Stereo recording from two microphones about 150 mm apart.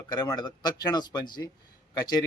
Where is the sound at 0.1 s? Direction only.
25° left (ahead or behind).